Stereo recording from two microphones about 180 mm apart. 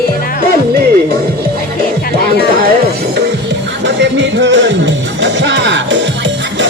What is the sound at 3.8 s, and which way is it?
Music, 80° right.